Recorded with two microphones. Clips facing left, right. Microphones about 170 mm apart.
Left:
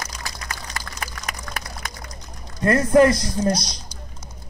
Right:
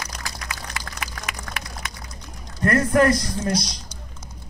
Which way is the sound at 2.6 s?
20° left (ahead or behind).